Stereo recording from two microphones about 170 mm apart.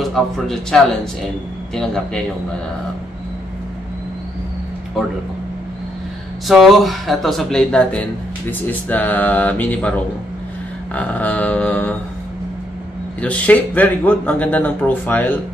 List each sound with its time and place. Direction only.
0.0 s speech: centre (ahead or behind)
6.4 s speech: centre (ahead or behind)
11.0 s speech: 10° left (ahead or behind)
13.2 s speech: 10° left (ahead or behind)